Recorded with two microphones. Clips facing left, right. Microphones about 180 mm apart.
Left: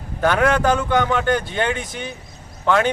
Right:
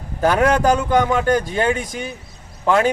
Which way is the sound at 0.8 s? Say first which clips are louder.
Right 2 dB; 10° right (ahead or behind).